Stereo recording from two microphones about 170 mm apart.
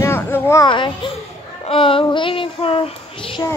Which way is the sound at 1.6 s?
30° left (ahead or behind).